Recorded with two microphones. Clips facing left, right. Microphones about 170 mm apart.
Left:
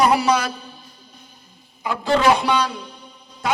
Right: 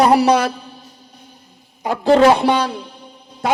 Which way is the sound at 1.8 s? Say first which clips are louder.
Right 6 dB; 40° right (ahead or behind).